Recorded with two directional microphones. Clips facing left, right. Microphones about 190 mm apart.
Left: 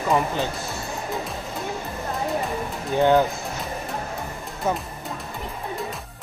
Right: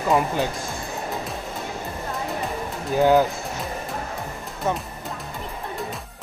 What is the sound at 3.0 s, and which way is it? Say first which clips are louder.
Speech: right 1 dB; 5° right (ahead or behind).